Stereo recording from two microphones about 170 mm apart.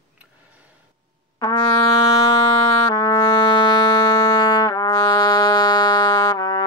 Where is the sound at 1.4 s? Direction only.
25° left (ahead or behind).